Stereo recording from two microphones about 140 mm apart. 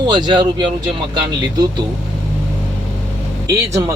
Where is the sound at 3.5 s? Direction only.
20° right (ahead or behind).